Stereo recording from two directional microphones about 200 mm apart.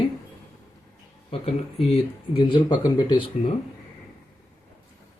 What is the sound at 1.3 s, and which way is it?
Speech, 30° left (ahead or behind).